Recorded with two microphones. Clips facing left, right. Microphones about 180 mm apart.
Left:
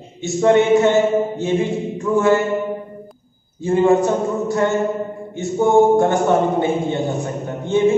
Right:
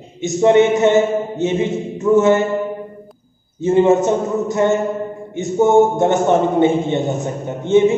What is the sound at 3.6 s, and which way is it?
A man's voice, 20° right (ahead or behind).